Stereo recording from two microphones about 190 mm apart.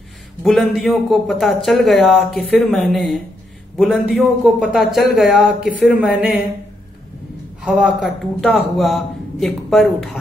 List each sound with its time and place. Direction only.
0.4 s speech: centre (ahead or behind)
7.6 s speech: centre (ahead or behind)